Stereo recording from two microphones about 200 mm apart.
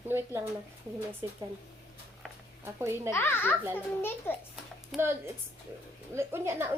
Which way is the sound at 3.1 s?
10° left (ahead or behind).